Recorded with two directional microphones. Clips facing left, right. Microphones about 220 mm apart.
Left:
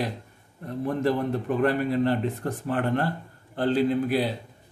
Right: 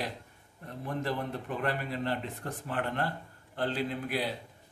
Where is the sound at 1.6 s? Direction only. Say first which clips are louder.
Left 11 dB; 45° left (ahead or behind).